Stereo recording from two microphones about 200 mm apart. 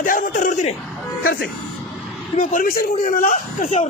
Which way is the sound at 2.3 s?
45° left (ahead or behind).